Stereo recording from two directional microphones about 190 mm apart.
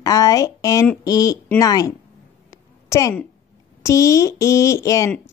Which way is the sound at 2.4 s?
15° left (ahead or behind).